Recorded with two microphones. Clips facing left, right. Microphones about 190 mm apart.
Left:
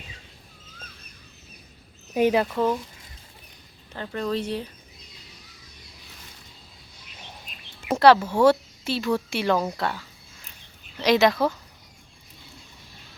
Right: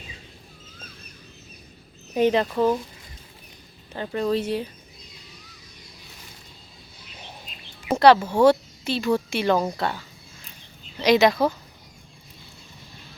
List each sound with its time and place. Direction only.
2.1 s speech: 10° left (ahead or behind)
2.5 s speech: 5° right (ahead or behind)
3.9 s speech: 15° right (ahead or behind)
7.9 s a sound: 5° left (ahead or behind)
8.2 s speech: 10° right (ahead or behind)
8.4 s a woman's voice: 5° left (ahead or behind)
11.0 s a woman's voice: centre (ahead or behind)